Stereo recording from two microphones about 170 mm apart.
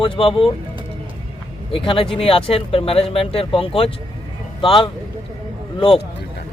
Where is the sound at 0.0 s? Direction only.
30° left (ahead or behind).